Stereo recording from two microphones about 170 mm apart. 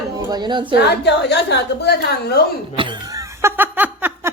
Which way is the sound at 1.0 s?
80° left.